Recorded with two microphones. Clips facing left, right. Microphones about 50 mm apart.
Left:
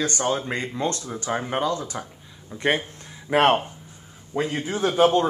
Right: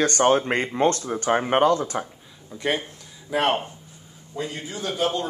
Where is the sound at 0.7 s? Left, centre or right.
Right.